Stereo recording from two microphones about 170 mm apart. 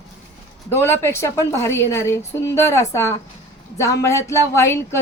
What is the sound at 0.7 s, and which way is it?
Speech, 15° left (ahead or behind).